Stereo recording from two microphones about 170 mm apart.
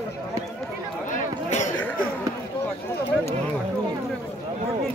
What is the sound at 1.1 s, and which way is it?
Chatter, 45° left (ahead or behind).